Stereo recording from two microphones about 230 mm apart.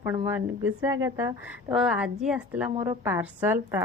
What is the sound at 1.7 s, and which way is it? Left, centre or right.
A woman's voice, centre.